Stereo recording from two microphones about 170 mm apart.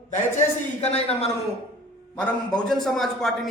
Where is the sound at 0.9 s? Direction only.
40° left (ahead or behind).